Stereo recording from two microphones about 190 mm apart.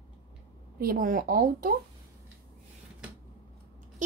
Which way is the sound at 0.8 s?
50° right (ahead or behind).